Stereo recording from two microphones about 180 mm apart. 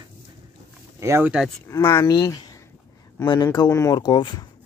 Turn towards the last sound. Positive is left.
turn(degrees=25)  # may be behind; listen again after turning